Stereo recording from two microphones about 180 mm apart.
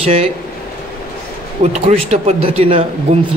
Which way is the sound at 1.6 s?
35° right (ahead or behind).